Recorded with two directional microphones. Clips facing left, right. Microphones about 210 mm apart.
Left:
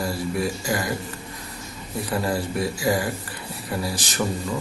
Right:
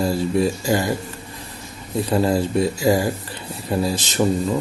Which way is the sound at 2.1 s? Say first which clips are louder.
Right 6 dB; 25° right (ahead or behind).